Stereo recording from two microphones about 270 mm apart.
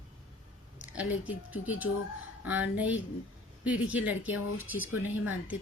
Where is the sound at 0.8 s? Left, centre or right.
Centre.